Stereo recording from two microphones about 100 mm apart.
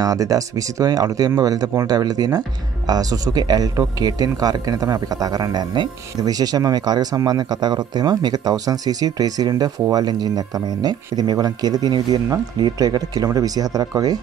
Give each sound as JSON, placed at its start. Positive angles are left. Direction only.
{"t": 0.0, "sound": "a man's voice", "side_deg": -35}